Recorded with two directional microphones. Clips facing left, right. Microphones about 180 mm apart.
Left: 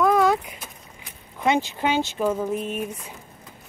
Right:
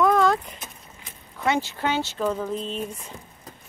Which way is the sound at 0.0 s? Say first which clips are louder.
Left 1 dB; 10° left (ahead or behind).